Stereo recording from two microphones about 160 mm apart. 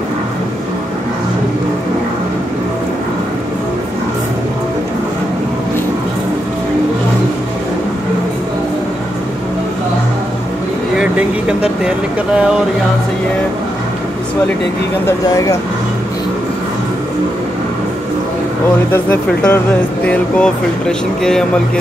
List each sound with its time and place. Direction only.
11.0 s a sound: 5° right (ahead or behind)
15.0 s speech: 20° left (ahead or behind)
18.9 s speech: 10° left (ahead or behind)